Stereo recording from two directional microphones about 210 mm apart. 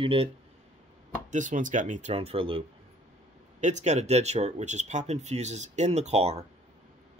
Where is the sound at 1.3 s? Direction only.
35° right (ahead or behind).